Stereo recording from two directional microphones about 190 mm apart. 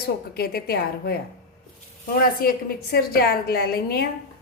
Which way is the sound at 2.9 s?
55° left (ahead or behind).